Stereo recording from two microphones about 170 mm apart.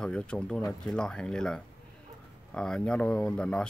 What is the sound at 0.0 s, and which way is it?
Speech, 5° left (ahead or behind).